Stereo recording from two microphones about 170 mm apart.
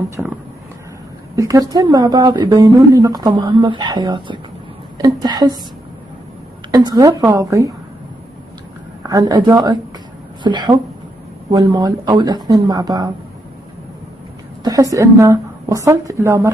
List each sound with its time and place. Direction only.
0.1 s a woman's voice: 15° right (ahead or behind)
6.7 s a woman's voice: 25° right (ahead or behind)
9.0 s a woman's voice: 20° right (ahead or behind)
14.6 s a woman's voice: 20° right (ahead or behind)